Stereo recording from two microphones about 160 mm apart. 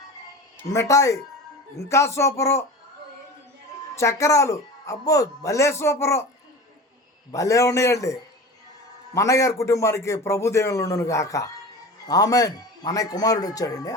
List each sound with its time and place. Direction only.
0.7 s a man's voice: 20° left (ahead or behind)
3.9 s a man's voice: 20° left (ahead or behind)
7.3 s a man's voice: 20° left (ahead or behind)